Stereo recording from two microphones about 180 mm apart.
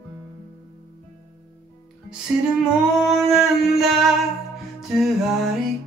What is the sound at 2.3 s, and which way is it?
Music, 5° right (ahead or behind).